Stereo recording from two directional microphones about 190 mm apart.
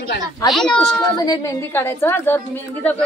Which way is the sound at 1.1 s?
20° left (ahead or behind).